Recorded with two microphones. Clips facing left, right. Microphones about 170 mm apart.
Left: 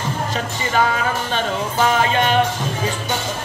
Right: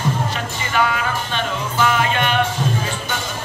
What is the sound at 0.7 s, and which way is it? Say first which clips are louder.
Speech: left 1 dB; 35° left (ahead or behind).